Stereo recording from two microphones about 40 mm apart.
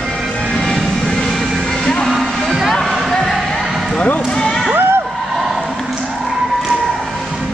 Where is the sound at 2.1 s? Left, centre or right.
Centre.